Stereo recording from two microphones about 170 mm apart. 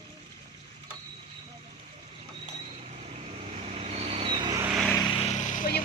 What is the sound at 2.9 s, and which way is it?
Vehicle, 40° right (ahead or behind).